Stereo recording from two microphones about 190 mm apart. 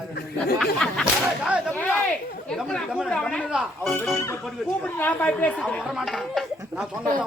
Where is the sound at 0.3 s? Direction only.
5° left (ahead or behind).